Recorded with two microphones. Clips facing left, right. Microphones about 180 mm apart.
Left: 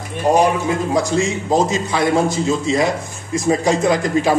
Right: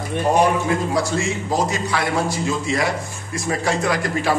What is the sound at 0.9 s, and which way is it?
A man's voice, 20° left (ahead or behind).